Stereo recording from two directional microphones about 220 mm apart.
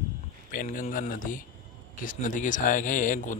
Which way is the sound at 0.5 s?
35° left (ahead or behind).